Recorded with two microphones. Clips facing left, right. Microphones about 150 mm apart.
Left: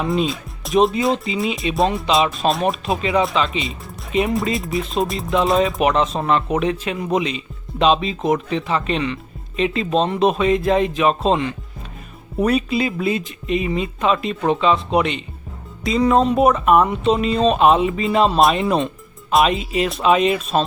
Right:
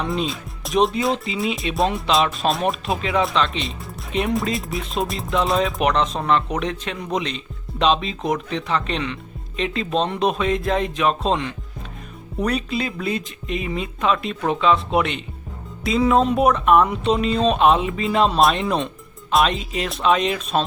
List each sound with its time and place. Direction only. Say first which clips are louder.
0.0 s speech: left 4 dB; centre (ahead or behind)